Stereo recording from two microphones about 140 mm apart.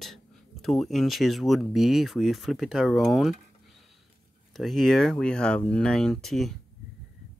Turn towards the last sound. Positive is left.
turn(degrees=0)  # may be behind; listen again after turning